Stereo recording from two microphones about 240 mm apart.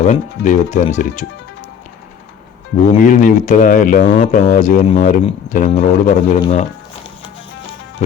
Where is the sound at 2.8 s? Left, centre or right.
Left.